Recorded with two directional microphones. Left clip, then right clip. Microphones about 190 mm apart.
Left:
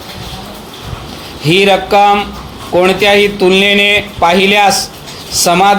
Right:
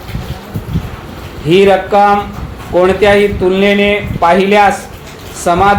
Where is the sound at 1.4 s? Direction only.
35° left (ahead or behind).